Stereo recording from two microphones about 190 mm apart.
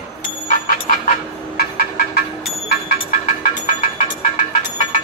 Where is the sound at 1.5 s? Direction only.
50° left (ahead or behind).